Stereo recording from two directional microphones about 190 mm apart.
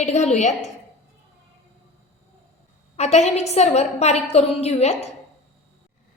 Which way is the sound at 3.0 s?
35° left (ahead or behind).